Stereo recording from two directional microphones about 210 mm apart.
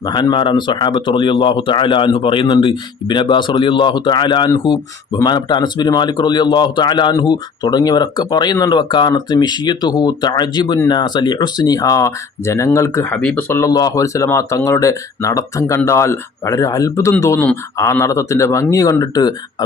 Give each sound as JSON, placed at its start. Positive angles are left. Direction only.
{"t": 0.0, "sound": "a man's voice", "side_deg": 20}